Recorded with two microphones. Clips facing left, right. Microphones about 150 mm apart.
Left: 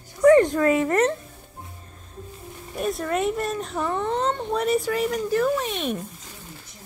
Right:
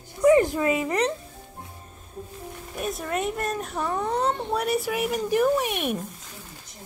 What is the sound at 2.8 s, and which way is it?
A woman's voice, centre (ahead or behind).